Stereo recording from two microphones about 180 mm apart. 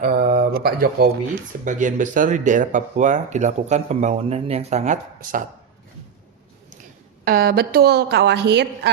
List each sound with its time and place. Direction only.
0.0 s speech: 50° right (ahead or behind)
1.6 s speech: 45° right (ahead or behind)
7.3 s a woman's voice: 55° right (ahead or behind)